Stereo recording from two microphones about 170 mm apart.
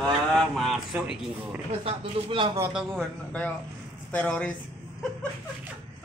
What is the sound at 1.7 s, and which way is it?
Speech, 30° right (ahead or behind).